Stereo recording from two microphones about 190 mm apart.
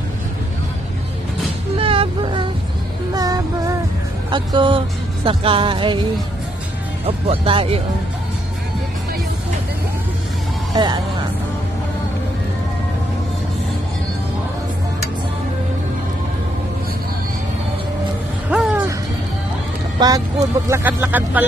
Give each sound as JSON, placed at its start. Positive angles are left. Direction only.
{"t": 1.8, "sound": "a sound", "side_deg": -30}
{"t": 3.1, "sound": "music", "side_deg": -20}
{"t": 7.1, "sound": "speech", "side_deg": -30}
{"t": 10.7, "sound": "speech", "side_deg": -20}
{"t": 18.5, "sound": "music", "side_deg": -5}
{"t": 20.0, "sound": "speech", "side_deg": -20}